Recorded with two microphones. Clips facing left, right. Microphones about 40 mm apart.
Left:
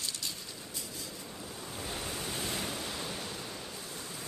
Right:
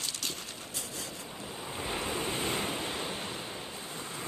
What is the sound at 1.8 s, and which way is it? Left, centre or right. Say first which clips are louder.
Waves: right 5 dB; right.